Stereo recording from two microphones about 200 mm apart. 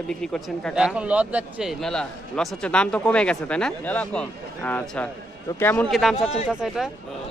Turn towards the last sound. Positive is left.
turn(degrees=-5)  # may be behind; listen again after turning